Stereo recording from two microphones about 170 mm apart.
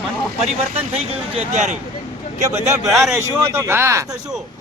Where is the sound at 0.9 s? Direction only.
35° right (ahead or behind).